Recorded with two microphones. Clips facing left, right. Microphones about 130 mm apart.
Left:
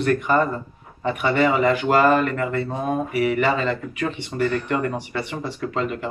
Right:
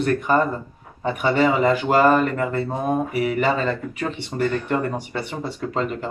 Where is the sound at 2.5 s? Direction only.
30° right (ahead or behind).